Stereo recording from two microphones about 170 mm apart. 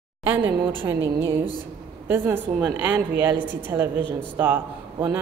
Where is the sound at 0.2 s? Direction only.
10° right (ahead or behind).